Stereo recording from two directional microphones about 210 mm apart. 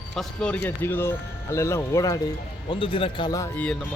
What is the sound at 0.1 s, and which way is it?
Speech, centre (ahead or behind).